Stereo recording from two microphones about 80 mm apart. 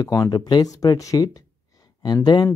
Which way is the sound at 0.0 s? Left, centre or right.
Left.